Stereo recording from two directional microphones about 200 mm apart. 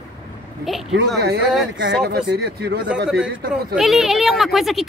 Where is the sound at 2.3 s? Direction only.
55° right (ahead or behind).